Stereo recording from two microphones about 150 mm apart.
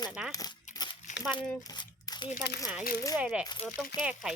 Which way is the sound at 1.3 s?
30° left (ahead or behind).